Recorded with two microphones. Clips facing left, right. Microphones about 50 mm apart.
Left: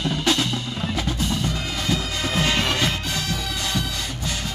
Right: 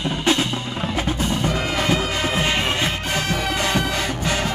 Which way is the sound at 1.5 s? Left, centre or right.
Right.